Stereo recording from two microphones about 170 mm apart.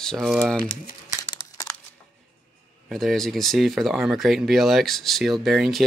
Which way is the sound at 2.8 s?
Centre (ahead or behind).